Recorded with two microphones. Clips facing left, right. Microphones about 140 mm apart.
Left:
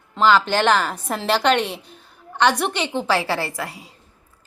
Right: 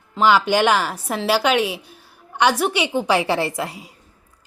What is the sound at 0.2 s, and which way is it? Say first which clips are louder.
Speech: right 1 dB; 10° right (ahead or behind).